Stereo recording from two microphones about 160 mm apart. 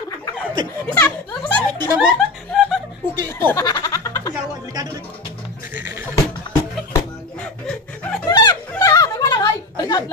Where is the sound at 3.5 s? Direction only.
20° left (ahead or behind).